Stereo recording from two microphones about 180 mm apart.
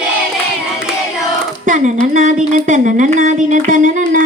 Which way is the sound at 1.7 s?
40° right (ahead or behind).